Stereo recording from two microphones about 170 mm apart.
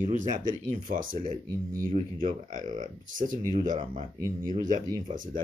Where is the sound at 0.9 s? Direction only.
55° right (ahead or behind).